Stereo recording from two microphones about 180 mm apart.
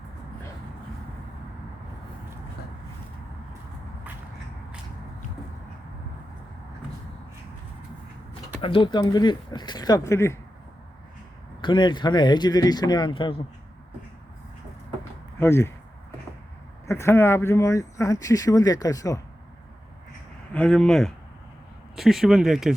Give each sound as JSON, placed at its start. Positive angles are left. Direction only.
{"t": 8.6, "sound": "speech", "side_deg": 30}
{"t": 11.6, "sound": "speech", "side_deg": 25}
{"t": 15.4, "sound": "speech", "side_deg": 15}
{"t": 16.8, "sound": "speech", "side_deg": 15}
{"t": 20.5, "sound": "speech", "side_deg": 5}